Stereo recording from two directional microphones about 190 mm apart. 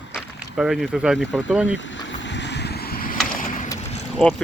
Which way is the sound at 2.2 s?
70° left (ahead or behind).